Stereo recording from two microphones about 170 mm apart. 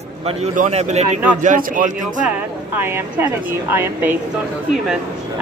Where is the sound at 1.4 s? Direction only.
50° right (ahead or behind).